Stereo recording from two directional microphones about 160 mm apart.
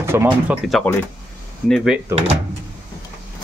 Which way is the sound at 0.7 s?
Centre (ahead or behind).